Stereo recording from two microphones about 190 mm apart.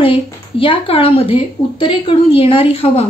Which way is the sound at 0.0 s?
30° left (ahead or behind).